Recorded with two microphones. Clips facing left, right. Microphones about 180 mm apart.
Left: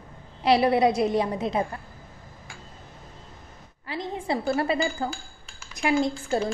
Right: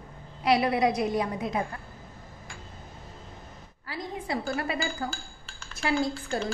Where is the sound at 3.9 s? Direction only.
25° left (ahead or behind).